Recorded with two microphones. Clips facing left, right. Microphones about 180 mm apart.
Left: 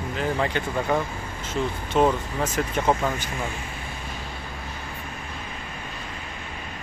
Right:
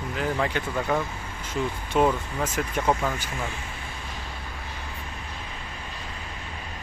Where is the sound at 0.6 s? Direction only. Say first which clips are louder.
Left 2 dB; 5° right (ahead or behind).